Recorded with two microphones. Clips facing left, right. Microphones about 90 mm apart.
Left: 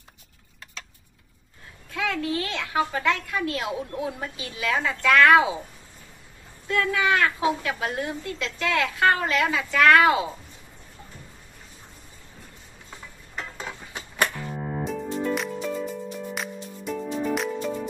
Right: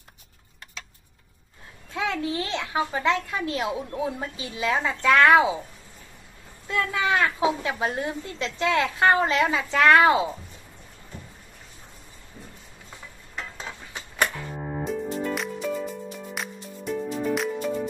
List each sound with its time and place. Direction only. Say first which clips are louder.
1.9 s a woman's voice: even; 25° right (ahead or behind)
6.7 s a woman's voice: left 1 dB; 25° right (ahead or behind)
13.4 s mechanisms: left 1 dB; 10° left (ahead or behind)
14.9 s music: even; centre (ahead or behind)